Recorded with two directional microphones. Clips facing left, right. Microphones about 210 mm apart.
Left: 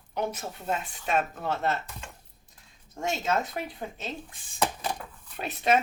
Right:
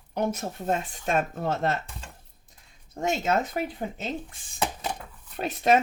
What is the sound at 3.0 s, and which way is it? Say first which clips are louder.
Speech: right 3 dB; 45° right (ahead or behind).